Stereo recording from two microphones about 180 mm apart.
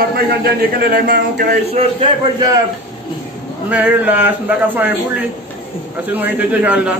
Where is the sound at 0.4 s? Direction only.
55° right (ahead or behind).